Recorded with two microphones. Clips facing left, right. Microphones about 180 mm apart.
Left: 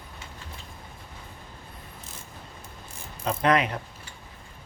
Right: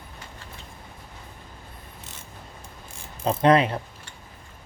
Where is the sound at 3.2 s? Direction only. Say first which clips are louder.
Right 5 dB; 30° right (ahead or behind).